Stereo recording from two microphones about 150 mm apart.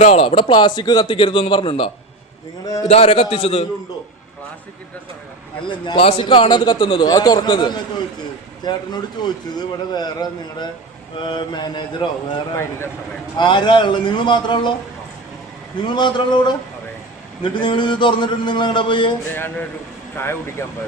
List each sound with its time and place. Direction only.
0.0 s a man's voice: 45° left (ahead or behind)
5.6 s a man's voice: 35° left (ahead or behind)
13.3 s a man's voice: 30° left (ahead or behind)
15.8 s a man's voice: 30° left (ahead or behind)
20.1 s speech: 15° left (ahead or behind)